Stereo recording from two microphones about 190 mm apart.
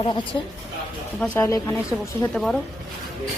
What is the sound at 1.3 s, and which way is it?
Speech, 15° left (ahead or behind).